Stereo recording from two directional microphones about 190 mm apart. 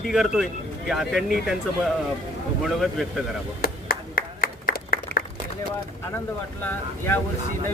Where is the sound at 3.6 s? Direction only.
50° left (ahead or behind).